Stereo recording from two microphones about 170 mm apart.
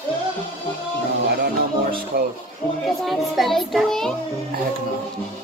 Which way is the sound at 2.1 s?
70° right (ahead or behind).